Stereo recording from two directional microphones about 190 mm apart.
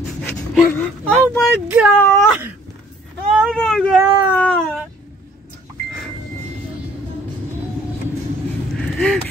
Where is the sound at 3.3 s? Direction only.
Centre (ahead or behind).